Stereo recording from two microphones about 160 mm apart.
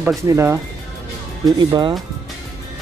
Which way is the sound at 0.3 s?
15° right (ahead or behind).